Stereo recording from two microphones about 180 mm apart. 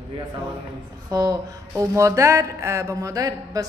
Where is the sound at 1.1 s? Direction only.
20° right (ahead or behind).